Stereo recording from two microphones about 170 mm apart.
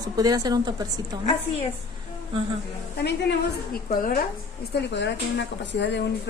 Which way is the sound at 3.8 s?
55° left (ahead or behind).